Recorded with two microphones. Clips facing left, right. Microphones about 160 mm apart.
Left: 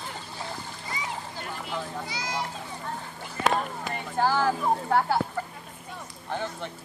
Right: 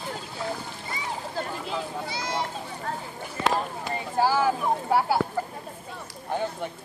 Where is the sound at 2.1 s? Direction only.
25° right (ahead or behind).